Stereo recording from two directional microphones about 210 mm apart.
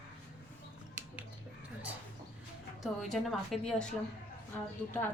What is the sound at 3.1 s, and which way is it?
Speech, centre (ahead or behind).